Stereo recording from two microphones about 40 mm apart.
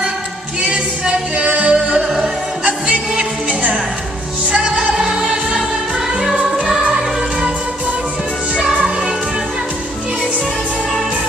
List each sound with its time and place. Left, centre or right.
0.6 s music: right
2.0 s music: centre
2.6 s music: right
4.6 s music: centre
8.7 s music: right